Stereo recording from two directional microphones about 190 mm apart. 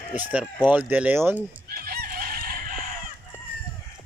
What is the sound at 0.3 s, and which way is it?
Speech, 5° right (ahead or behind).